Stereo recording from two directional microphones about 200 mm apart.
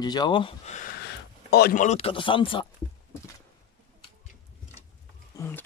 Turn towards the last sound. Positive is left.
turn(degrees=10)  # may be behind; listen again after turning